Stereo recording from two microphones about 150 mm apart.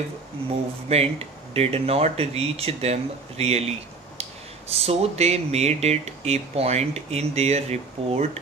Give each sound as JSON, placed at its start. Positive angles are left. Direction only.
{"t": 0.8, "sound": "speech", "side_deg": -40}